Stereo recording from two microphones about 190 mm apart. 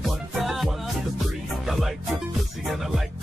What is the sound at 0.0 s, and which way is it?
Music, centre (ahead or behind).